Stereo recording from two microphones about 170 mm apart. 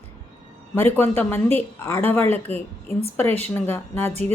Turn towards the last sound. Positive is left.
turn(degrees=15)  # may be behind; listen again after turning